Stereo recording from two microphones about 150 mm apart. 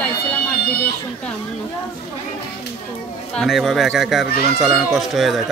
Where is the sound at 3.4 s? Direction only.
Centre (ahead or behind).